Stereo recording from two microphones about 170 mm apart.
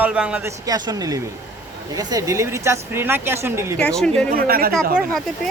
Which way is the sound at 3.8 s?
5° left (ahead or behind).